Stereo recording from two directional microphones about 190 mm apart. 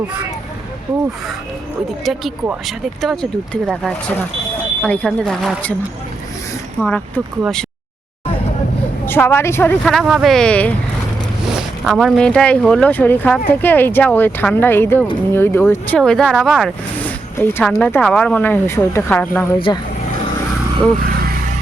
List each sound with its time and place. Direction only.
2.0 s speech: centre (ahead or behind)
6.7 s speech: centre (ahead or behind)
9.0 s speech: 10° left (ahead or behind)
9.8 s speech: centre (ahead or behind)
19.5 s speech: 25° left (ahead or behind)